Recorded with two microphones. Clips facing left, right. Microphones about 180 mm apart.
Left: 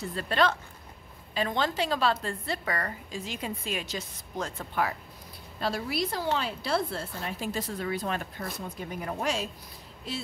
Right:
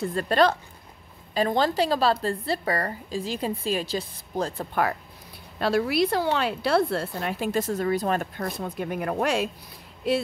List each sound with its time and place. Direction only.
0.0 s a woman's voice: 45° right (ahead or behind)
5.6 s a woman's voice: 70° right (ahead or behind); by 8.3 s 40° right (ahead or behind)
8.4 s a woman's voice: 65° right (ahead or behind)